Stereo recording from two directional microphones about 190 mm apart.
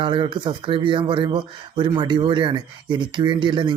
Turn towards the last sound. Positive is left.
turn(degrees=-25)  # may be behind; listen again after turning